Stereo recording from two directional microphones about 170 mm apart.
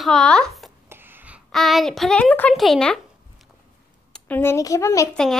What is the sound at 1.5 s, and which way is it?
Speech, centre (ahead or behind).